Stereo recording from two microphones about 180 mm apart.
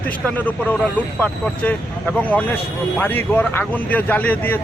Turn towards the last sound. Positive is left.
turn(degrees=10)  # may be behind; listen again after turning